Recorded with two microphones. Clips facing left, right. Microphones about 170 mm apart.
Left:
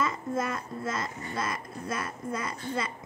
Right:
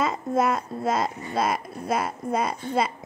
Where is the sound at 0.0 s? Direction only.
80° right.